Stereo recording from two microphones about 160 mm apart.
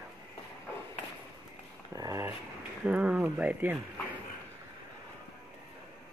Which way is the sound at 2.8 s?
10° right (ahead or behind).